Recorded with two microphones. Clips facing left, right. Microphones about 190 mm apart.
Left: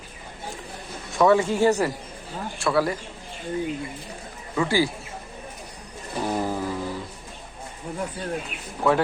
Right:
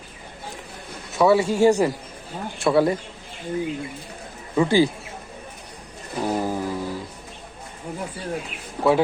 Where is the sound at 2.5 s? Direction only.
25° right (ahead or behind).